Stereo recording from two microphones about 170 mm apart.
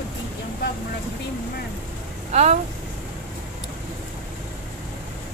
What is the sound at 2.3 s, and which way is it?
Speech, 40° right (ahead or behind).